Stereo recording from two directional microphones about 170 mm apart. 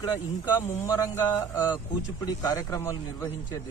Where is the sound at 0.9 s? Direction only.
20° left (ahead or behind).